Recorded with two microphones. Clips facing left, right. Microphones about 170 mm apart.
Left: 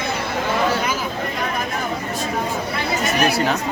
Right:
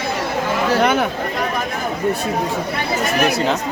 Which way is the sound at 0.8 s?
65° right (ahead or behind).